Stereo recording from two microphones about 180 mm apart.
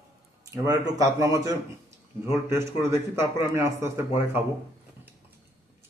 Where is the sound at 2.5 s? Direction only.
15° right (ahead or behind).